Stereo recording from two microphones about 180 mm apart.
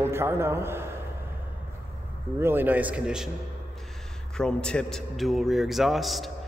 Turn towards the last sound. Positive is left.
turn(degrees=0)  # may be behind; listen again after turning